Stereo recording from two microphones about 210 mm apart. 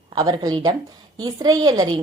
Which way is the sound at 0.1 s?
20° right (ahead or behind).